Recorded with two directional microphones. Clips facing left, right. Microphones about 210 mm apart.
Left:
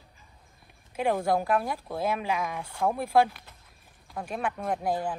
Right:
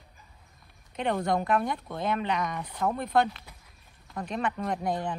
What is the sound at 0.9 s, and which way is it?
Speech, 5° left (ahead or behind).